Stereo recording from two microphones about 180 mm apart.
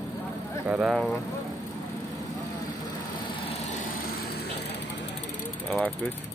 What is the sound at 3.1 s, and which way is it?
Vehicle, 30° left (ahead or behind).